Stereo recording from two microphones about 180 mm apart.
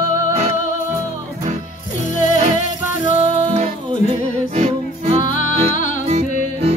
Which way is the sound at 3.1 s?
35° right (ahead or behind).